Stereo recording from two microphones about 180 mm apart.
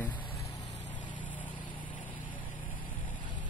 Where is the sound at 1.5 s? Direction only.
25° left (ahead or behind).